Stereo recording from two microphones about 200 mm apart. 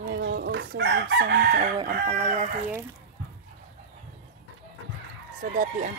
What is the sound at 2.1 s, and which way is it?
Speech, 40° right (ahead or behind).